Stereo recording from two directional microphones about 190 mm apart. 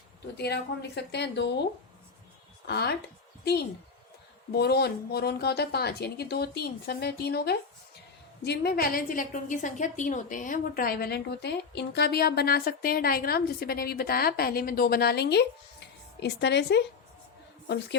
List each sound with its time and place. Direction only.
0.3 s a woman's voice: 60° left (ahead or behind)
2.6 s a woman's voice: 60° left (ahead or behind)
4.5 s a woman's voice: 60° left (ahead or behind)